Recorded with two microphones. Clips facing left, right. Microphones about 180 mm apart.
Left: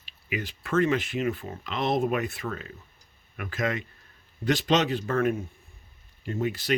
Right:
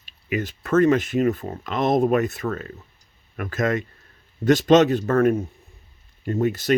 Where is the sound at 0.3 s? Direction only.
45° right (ahead or behind).